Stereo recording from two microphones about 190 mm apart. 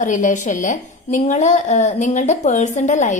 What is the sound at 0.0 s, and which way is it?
A woman's voice, 40° left (ahead or behind).